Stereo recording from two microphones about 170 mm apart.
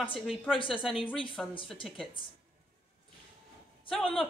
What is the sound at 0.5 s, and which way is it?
Speech, 30° left (ahead or behind).